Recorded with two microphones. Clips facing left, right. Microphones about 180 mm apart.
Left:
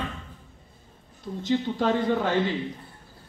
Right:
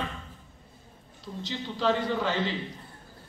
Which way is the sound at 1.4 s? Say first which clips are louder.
Left 4 dB; 50° left (ahead or behind).